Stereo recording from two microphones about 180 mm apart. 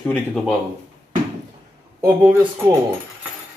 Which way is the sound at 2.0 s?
10° right (ahead or behind).